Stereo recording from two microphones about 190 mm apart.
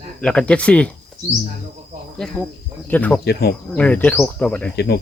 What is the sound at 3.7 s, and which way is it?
Speech, 5° left (ahead or behind).